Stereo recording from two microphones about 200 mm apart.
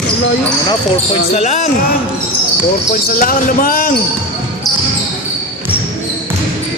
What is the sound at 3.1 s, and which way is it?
Speech, 45° left (ahead or behind).